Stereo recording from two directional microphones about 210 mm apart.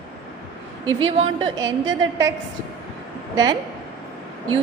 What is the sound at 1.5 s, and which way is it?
Speech, 15° right (ahead or behind).